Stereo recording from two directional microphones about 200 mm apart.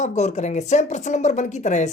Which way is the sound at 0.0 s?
35° left (ahead or behind).